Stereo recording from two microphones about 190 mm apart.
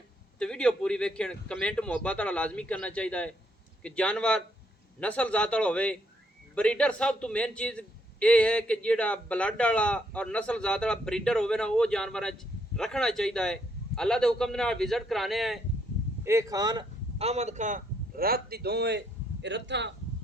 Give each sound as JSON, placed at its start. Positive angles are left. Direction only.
{"t": 0.3, "sound": "a man's voice", "side_deg": 5}
{"t": 16.2, "sound": "speech", "side_deg": -15}
{"t": 17.2, "sound": "a man's voice", "side_deg": -35}